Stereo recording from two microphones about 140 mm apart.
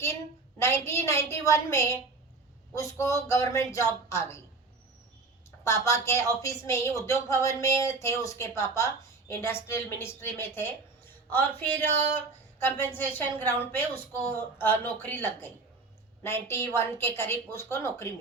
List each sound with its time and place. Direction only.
0.6 s speech: 20° left (ahead or behind)
5.5 s a woman's voice: 20° left (ahead or behind)